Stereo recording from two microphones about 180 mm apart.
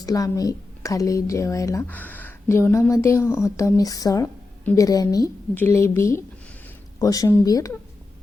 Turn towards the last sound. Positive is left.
turn(degrees=20)  # may be behind; listen again after turning